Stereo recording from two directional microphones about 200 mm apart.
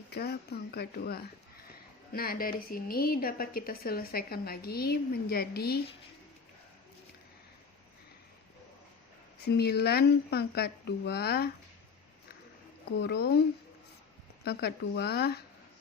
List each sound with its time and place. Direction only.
0.1 s a woman's voice: 55° left (ahead or behind)
9.4 s a woman's voice: 55° left (ahead or behind)
13.0 s a woman's voice: 55° left (ahead or behind)
14.4 s a woman's voice: 55° left (ahead or behind)